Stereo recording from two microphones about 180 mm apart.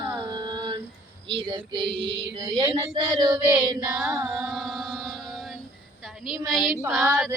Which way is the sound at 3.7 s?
20° right (ahead or behind).